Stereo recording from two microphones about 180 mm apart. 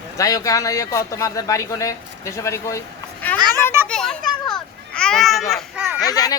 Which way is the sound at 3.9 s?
5° left (ahead or behind).